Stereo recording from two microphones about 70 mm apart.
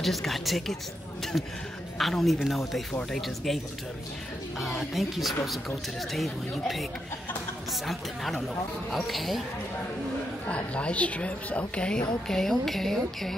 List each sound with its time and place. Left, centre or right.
0.0 s speech: centre
4.6 s speech: centre
10.5 s speech: centre